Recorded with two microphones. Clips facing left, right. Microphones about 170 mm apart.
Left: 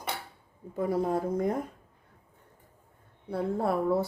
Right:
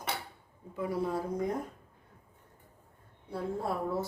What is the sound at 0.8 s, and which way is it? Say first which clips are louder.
Speech: left 5 dB; 45° left (ahead or behind).